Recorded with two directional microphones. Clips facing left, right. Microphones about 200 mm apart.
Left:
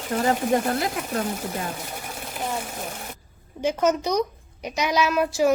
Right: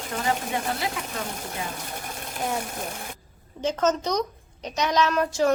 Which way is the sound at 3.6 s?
10° left (ahead or behind).